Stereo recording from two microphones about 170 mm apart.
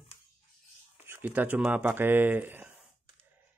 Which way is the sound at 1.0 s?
10° right (ahead or behind).